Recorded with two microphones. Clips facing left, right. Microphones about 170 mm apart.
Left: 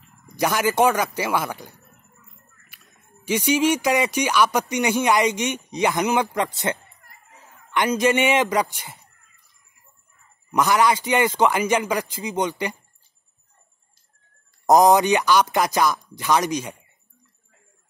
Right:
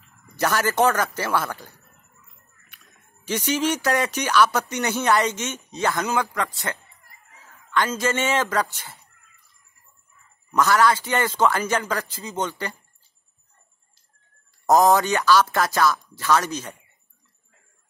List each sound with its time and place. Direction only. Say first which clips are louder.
0.3 s speech: left 1 dB; 15° left (ahead or behind)
2.7 s a man's voice: left 2 dB; 10° left (ahead or behind)
10.5 s speech: even; 15° left (ahead or behind)
14.7 s speech: left 2 dB; 15° left (ahead or behind)